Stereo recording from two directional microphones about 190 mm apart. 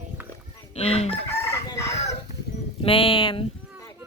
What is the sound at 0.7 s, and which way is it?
Chicken, 30° left (ahead or behind).